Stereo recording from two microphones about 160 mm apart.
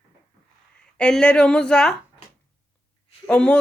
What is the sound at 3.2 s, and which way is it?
Speech, 5° left (ahead or behind).